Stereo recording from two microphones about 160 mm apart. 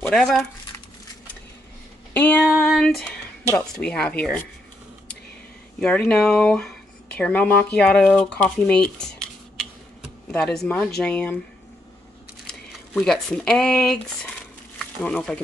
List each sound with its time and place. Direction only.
0.0 s speech: 5° left (ahead or behind)
2.1 s speech: 10° left (ahead or behind)
5.8 s speech: 5° left (ahead or behind)
13.0 s speech: 5° left (ahead or behind)